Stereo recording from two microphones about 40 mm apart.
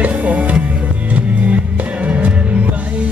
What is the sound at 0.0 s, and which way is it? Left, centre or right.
Music, right.